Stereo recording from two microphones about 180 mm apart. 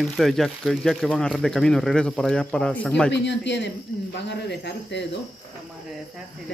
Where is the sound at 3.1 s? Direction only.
75° left (ahead or behind).